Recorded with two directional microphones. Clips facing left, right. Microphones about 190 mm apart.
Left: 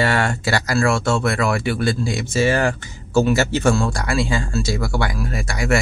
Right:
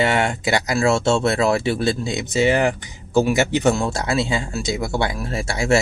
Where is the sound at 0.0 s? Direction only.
20° right (ahead or behind).